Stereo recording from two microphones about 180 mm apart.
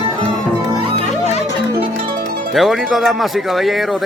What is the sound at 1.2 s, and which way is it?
Music, 35° left (ahead or behind).